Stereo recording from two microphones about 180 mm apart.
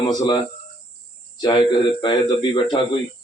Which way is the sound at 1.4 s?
25° left (ahead or behind).